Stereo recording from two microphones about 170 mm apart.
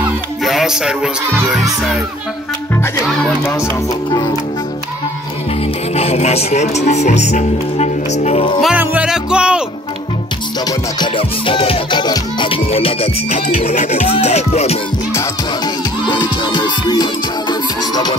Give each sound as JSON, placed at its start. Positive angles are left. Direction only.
{"t": 0.4, "sound": "music", "side_deg": 0}
{"t": 3.1, "sound": "music", "side_deg": 0}
{"t": 3.4, "sound": "music", "side_deg": 15}
{"t": 5.9, "sound": "speech", "side_deg": 40}
{"t": 8.5, "sound": "music", "side_deg": -5}
{"t": 10.7, "sound": "music", "side_deg": 30}
{"t": 15.1, "sound": "music", "side_deg": 25}